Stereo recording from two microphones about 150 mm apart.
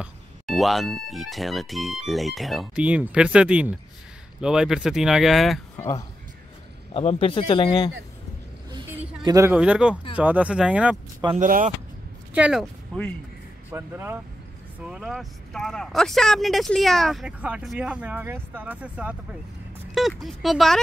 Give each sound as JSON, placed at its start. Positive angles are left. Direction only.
{"t": 0.0, "sound": "speech", "side_deg": 0}
{"t": 5.8, "sound": "speech", "side_deg": 20}
{"t": 6.9, "sound": "a man's voice", "side_deg": 40}
{"t": 9.2, "sound": "a man's voice", "side_deg": -20}
{"t": 9.6, "sound": "speech", "side_deg": -5}
{"t": 11.3, "sound": "speech", "side_deg": -60}
{"t": 12.4, "sound": "speech", "side_deg": -5}
{"t": 13.7, "sound": "speech", "side_deg": -15}
{"t": 14.9, "sound": "speech", "side_deg": -5}